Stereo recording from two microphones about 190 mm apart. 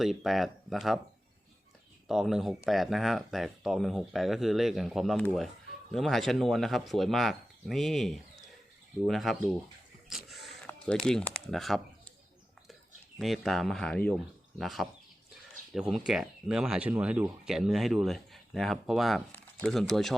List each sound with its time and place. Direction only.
0.0 s speech: centre (ahead or behind)
2.0 s speech: centre (ahead or behind)
10.1 s a sound: centre (ahead or behind)
10.7 s speech: 5° left (ahead or behind)
13.1 s speech: centre (ahead or behind)